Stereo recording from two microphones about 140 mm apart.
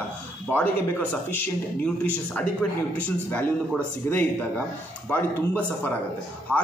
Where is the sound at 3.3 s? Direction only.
10° left (ahead or behind).